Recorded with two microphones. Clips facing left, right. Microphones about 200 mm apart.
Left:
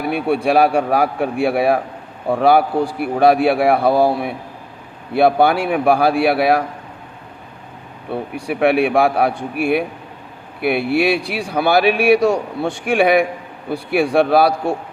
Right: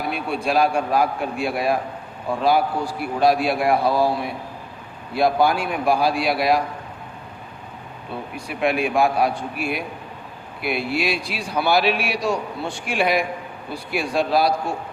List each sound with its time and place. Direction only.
0.1 s a man's voice: 65° left (ahead or behind)
8.1 s a man's voice: 65° left (ahead or behind)